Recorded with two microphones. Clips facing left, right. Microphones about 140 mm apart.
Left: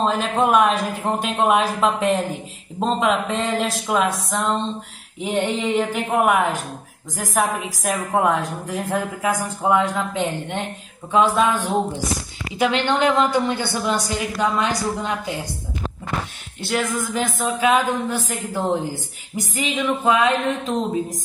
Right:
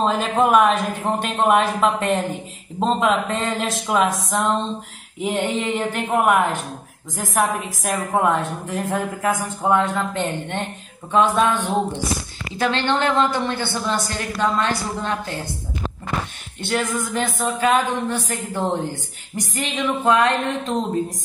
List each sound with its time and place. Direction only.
0.0 s speech: centre (ahead or behind)
7.8 s a woman's voice: centre (ahead or behind)
16.6 s speech: centre (ahead or behind)